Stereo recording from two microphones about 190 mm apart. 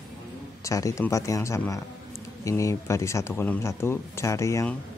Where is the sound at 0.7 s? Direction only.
15° left (ahead or behind).